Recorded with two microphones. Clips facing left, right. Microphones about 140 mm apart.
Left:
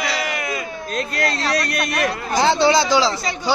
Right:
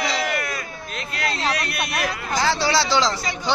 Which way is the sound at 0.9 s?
40° left (ahead or behind).